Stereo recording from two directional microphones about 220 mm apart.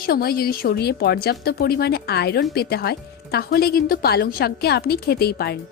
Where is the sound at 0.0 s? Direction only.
45° left (ahead or behind).